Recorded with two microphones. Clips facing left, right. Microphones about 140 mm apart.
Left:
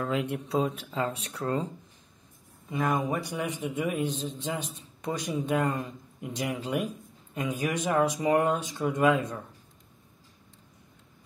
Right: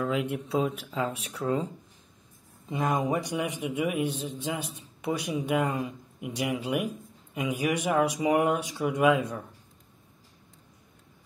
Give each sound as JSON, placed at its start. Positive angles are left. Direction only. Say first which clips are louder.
{"t": 0.0, "sound": "a man's voice", "louder": "right 1 dB", "side_deg": 0}
{"t": 2.7, "sound": "a man's voice", "louder": "right 1 dB", "side_deg": -20}